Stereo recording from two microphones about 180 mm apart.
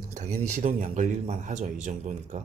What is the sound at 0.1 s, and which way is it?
A man's voice, 40° right (ahead or behind).